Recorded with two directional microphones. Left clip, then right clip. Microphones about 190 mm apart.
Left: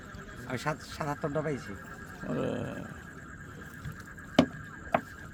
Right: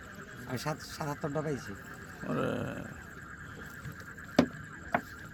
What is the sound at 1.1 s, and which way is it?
Speech, 20° right (ahead or behind).